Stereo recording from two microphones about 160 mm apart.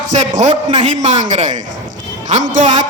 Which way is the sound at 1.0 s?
45° right (ahead or behind).